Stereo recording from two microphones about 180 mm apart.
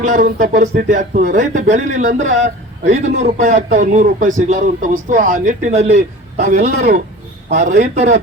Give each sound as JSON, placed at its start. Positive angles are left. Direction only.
{"t": 0.0, "sound": "a man's voice", "side_deg": -45}